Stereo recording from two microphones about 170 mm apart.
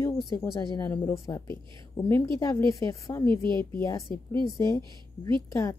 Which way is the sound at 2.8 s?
15° left (ahead or behind).